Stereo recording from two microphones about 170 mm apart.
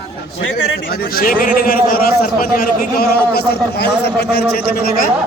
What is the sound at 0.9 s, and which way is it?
A man's voice, 60° left (ahead or behind).